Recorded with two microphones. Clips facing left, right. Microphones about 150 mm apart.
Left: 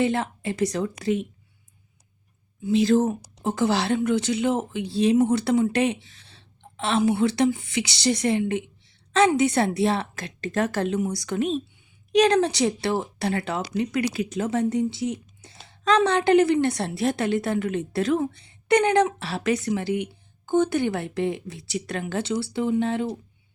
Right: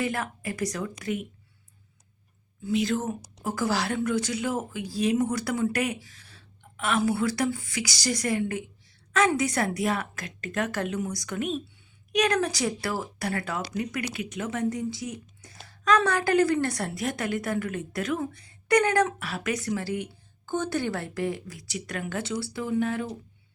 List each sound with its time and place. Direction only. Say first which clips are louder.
0.0 s speech: left 6 dB; 25° left (ahead or behind)
2.6 s speech: left 7 dB; 35° left (ahead or behind)